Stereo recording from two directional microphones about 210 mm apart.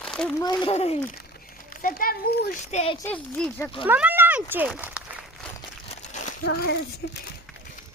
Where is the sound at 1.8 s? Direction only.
40° left (ahead or behind).